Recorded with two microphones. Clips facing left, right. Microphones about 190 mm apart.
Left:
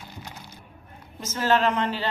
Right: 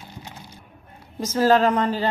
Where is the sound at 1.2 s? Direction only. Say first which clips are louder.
Right 5 dB; 35° right (ahead or behind).